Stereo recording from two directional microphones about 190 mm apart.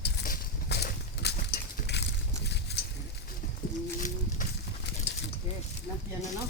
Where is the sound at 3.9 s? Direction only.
40° left (ahead or behind).